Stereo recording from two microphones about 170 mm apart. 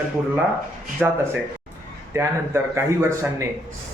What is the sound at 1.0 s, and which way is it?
Speech, 5° right (ahead or behind).